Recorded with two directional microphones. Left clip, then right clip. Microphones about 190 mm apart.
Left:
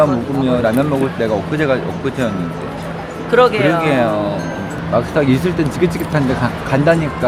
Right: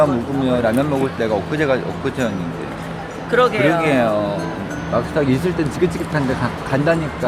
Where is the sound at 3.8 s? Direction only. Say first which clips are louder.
Left 2 dB; 20° right (ahead or behind).